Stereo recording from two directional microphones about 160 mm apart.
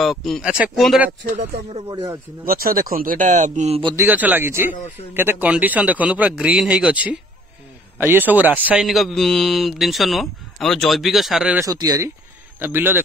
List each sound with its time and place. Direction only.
0.0 s a man's voice: centre (ahead or behind)
1.2 s speech: 45° right (ahead or behind)
2.4 s a man's voice: 65° right (ahead or behind); by 3.8 s 45° right (ahead or behind)
3.8 s speech: 20° right (ahead or behind)
4.1 s a man's voice: 10° right (ahead or behind)
11.6 s a man's voice: 20° right (ahead or behind)